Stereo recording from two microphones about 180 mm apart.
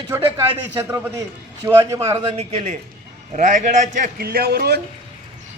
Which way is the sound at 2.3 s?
45° right (ahead or behind).